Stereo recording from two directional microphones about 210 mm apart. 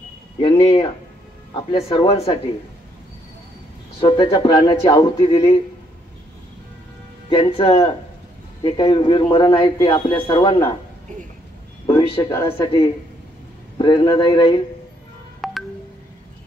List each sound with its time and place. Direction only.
0.4 s a man's voice: 25° left (ahead or behind)
4.0 s a man's voice: 25° left (ahead or behind)
7.2 s a man's voice: 25° left (ahead or behind)
12.2 s speech: 15° left (ahead or behind)
13.7 s a man's voice: 20° left (ahead or behind)
15.4 s telephone dialing: centre (ahead or behind)